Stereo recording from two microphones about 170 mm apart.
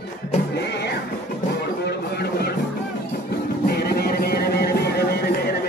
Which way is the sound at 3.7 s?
65° left (ahead or behind).